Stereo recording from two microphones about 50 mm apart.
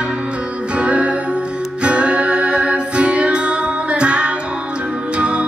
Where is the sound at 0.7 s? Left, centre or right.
Right.